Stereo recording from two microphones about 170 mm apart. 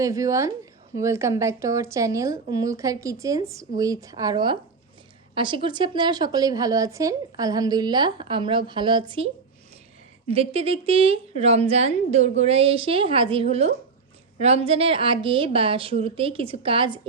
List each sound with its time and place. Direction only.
0.0 s a woman's voice: 20° right (ahead or behind)